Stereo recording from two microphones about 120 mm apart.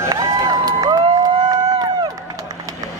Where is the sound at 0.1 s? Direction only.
35° right (ahead or behind).